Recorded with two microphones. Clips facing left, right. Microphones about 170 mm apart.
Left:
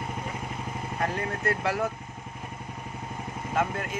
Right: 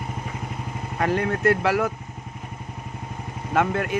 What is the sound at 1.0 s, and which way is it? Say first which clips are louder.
Speech: right 8 dB; 80° right.